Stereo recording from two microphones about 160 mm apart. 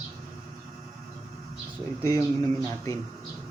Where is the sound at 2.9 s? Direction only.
20° left (ahead or behind).